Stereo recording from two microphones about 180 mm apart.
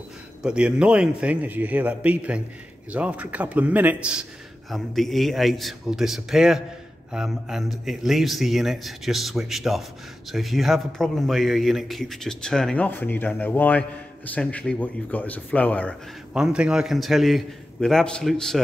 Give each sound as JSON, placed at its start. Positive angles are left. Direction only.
{"t": 0.4, "sound": "a man's voice", "side_deg": -5}
{"t": 16.3, "sound": "a man's voice", "side_deg": -5}